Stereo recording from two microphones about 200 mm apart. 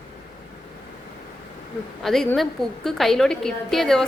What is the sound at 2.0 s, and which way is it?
A woman's voice, centre (ahead or behind).